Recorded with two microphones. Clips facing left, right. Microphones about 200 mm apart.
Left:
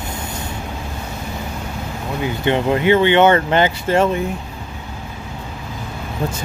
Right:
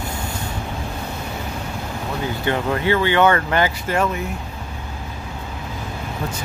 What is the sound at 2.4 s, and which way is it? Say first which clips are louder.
Speech: left 5 dB; 20° left (ahead or behind).